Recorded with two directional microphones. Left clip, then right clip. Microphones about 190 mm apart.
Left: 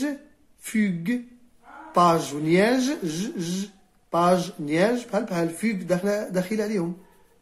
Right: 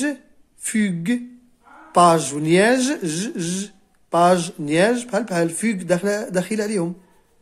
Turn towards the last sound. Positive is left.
turn(degrees=-40)  # may be behind; listen again after turning